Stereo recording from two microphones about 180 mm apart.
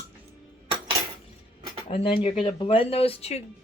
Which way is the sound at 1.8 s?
30° left (ahead or behind).